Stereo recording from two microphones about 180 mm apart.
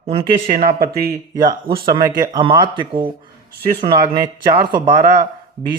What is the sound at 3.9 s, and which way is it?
Speech, 25° right (ahead or behind).